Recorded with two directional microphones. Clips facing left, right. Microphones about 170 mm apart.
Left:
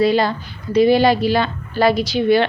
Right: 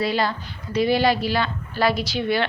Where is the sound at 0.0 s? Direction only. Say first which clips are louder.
Left 7 dB; 20° left (ahead or behind).